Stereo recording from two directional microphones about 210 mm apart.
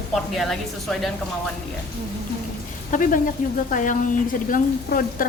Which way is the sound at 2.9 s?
40° left (ahead or behind).